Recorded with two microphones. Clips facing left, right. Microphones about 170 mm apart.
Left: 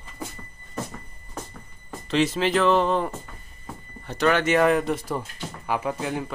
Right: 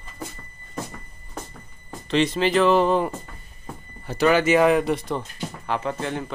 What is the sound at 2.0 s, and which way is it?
Speech, 5° left (ahead or behind).